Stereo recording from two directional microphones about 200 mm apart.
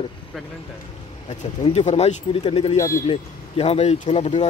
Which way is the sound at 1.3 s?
30° left (ahead or behind).